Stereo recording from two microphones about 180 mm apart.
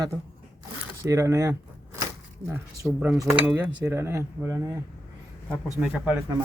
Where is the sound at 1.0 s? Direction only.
15° right (ahead or behind).